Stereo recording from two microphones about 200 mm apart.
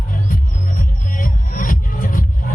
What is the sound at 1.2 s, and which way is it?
Music, 40° left (ahead or behind).